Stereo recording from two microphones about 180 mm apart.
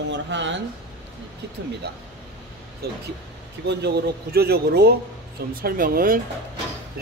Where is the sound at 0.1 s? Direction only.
85° right.